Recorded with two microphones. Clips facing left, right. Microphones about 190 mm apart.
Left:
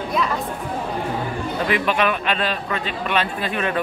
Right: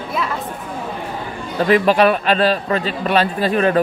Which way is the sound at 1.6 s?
35° right (ahead or behind).